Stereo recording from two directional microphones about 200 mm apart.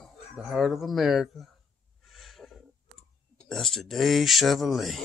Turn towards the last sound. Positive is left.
turn(degrees=0)  # may be behind; listen again after turning